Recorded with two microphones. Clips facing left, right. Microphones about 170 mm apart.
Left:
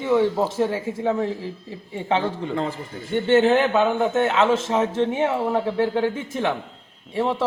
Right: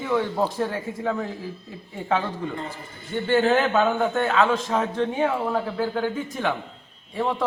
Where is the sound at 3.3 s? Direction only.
20° left (ahead or behind).